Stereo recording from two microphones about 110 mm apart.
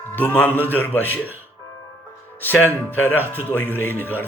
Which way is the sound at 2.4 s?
15° left (ahead or behind).